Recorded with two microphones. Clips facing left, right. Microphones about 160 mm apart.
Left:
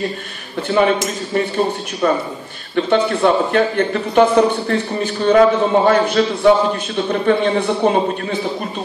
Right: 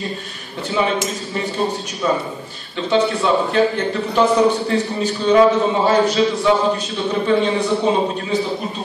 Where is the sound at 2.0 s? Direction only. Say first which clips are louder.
Left 3 dB; 55° left (ahead or behind).